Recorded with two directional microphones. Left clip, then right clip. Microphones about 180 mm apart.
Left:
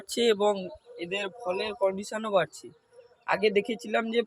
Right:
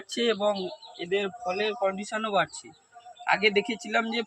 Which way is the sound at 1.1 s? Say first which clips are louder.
Right 3 dB; 30° left (ahead or behind).